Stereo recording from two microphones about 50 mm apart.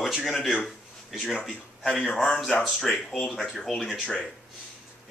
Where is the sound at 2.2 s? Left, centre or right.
Centre.